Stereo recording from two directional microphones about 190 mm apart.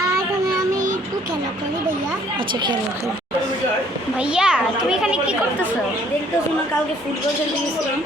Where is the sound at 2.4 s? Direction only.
25° right (ahead or behind).